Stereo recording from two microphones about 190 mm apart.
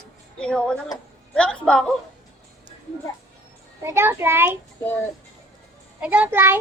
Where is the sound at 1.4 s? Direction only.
5° left (ahead or behind).